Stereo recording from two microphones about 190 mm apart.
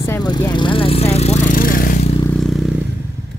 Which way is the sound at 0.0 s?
15° left (ahead or behind).